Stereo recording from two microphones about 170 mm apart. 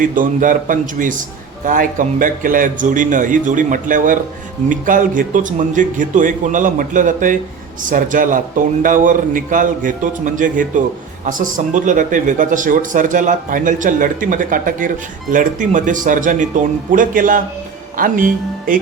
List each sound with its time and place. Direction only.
0.0 s speech: 50° right (ahead or behind)